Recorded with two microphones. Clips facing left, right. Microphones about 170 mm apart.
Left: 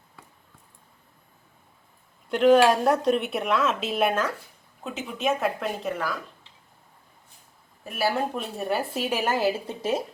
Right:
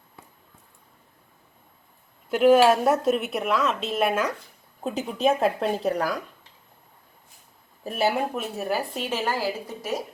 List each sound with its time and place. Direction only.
2.3 s speech: 5° right (ahead or behind)
4.8 s a woman's voice: 35° right (ahead or behind)
7.9 s speech: 25° right (ahead or behind)
8.1 s speech: 5° right (ahead or behind); by 10.0 s 25° left (ahead or behind)